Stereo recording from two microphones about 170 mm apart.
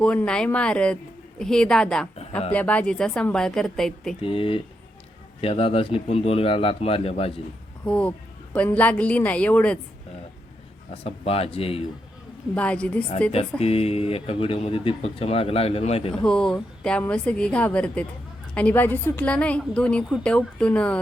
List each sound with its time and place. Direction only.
0.0 s a woman's voice: 5° left (ahead or behind)
4.2 s speech: 30° left (ahead or behind)
7.9 s a woman's voice: 5° left (ahead or behind)
10.9 s speech: 35° left (ahead or behind)
12.5 s a woman's voice: 5° left (ahead or behind)
13.3 s speech: 35° left (ahead or behind)
16.1 s a woman's voice: 5° left (ahead or behind)